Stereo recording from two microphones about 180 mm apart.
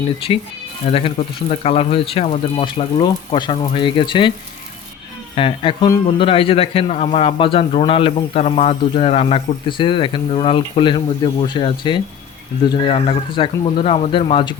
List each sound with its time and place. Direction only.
0.9 s a man's voice: 35° left (ahead or behind)
5.3 s a man's voice: 30° left (ahead or behind)